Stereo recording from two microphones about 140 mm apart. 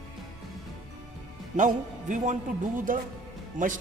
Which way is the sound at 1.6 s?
65° right (ahead or behind).